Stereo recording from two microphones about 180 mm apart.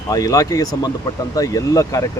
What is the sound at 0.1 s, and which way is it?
Speech, 20° left (ahead or behind).